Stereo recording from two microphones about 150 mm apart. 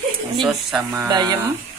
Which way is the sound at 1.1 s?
25° right (ahead or behind).